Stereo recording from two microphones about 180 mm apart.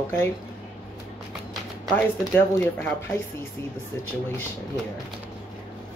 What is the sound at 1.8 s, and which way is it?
Speech, 10° left (ahead or behind).